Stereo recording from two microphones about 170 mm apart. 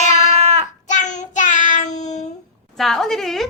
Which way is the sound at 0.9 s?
45° left (ahead or behind).